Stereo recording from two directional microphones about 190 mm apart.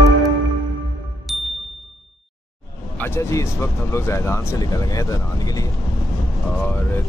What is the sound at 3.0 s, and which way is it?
Speech, 15° left (ahead or behind).